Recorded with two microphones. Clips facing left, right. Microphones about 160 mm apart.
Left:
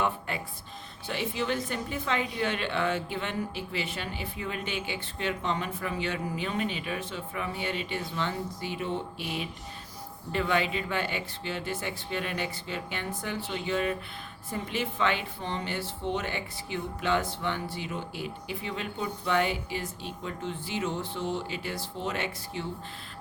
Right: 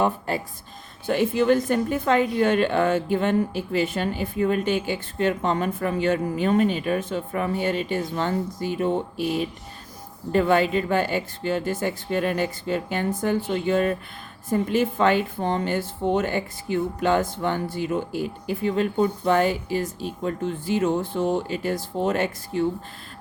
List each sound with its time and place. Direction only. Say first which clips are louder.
0.0 s speech: right 7 dB; 40° right (ahead or behind)
1.0 s a woman's voice: right 11 dB; 50° right (ahead or behind)